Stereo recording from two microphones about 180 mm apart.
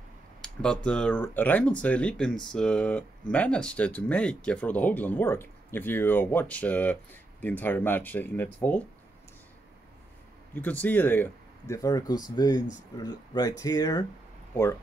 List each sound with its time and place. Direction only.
0.4 s a sound: 5° left (ahead or behind)
0.8 s speech: 5° left (ahead or behind)
10.5 s speech: 10° left (ahead or behind)